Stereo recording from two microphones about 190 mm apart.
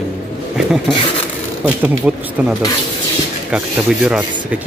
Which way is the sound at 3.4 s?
5° right (ahead or behind).